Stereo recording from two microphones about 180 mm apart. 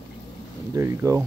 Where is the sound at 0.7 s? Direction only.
15° right (ahead or behind).